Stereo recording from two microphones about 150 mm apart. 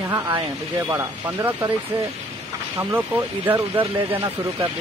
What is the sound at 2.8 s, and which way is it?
Speech, 15° right (ahead or behind).